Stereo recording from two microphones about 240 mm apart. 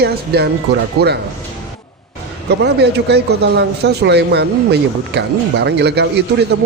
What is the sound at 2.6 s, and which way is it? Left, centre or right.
Speech, right.